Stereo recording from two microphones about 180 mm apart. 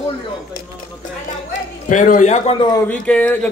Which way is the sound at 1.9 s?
45° left (ahead or behind).